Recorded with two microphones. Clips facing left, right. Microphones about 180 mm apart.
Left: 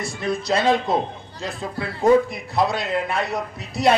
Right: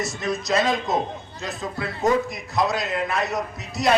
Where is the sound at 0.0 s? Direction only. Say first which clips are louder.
Left 1 dB; 30° left (ahead or behind).